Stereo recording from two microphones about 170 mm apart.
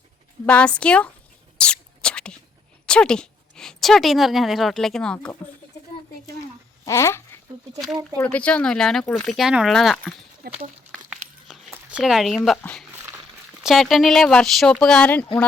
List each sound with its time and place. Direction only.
0.4 s a woman's voice: 5° left (ahead or behind)
1.5 s whispering: 5° left (ahead or behind)
2.8 s a woman's voice: 5° left (ahead or behind)
6.8 s speech: 15° left (ahead or behind)
7.8 s speech: centre (ahead or behind)
10.4 s a sound: 65° right (ahead or behind)
11.7 s a sound: 5° right (ahead or behind)
12.5 s speech: 5° left (ahead or behind)